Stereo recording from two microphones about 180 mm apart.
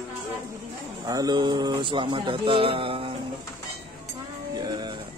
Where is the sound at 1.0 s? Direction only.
20° right (ahead or behind).